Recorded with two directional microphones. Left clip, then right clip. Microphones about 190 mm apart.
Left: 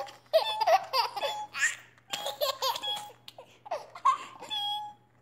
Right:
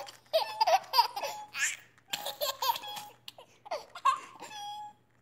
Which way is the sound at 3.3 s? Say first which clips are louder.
Left 2 dB; 20° right (ahead or behind).